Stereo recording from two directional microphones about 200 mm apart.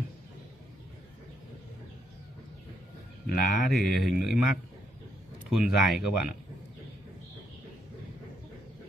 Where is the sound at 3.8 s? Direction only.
Centre (ahead or behind).